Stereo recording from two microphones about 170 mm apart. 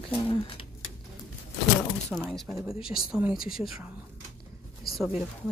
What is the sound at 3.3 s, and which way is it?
Speech, 60° left (ahead or behind).